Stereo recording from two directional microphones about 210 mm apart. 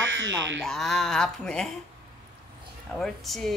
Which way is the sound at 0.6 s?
Centre (ahead or behind).